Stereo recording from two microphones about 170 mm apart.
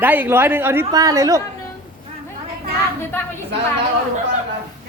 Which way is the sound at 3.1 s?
10° left (ahead or behind).